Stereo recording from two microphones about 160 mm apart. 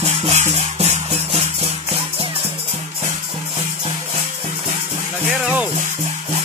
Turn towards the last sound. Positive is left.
turn(degrees=-10)  # may be behind; listen again after turning